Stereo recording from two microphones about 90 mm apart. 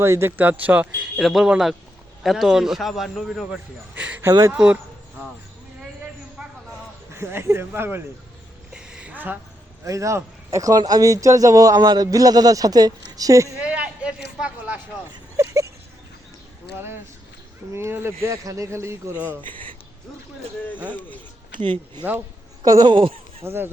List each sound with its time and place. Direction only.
0.0 s speech: 30° right (ahead or behind)
1.1 s a man's voice: 5° right (ahead or behind)
3.9 s speech: 15° right (ahead or behind)
6.4 s a sound: 10° right (ahead or behind)
7.1 s speech: 30° right (ahead or behind)
8.7 s a sound: 10° right (ahead or behind)
9.8 s a man's voice: 35° right (ahead or behind)
13.6 s speech: 15° right (ahead or behind)
15.4 s a sound: 35° right (ahead or behind)
16.7 s a man's voice: 25° right (ahead or behind)
21.5 s speech: 65° right (ahead or behind)
22.7 s speech: 45° right (ahead or behind)
23.4 s speech: 25° right (ahead or behind)